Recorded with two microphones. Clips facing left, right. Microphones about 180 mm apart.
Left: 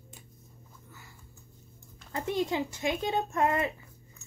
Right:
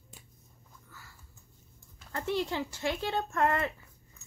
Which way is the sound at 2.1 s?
15° left (ahead or behind).